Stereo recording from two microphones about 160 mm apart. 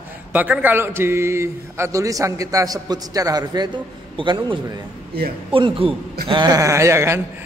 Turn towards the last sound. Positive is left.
turn(degrees=-15)  # may be behind; listen again after turning